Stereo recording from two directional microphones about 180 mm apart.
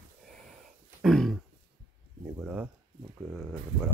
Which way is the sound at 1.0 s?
Centre (ahead or behind).